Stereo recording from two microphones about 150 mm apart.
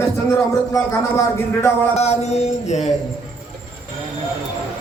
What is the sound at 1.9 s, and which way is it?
Mantra, 45° left (ahead or behind).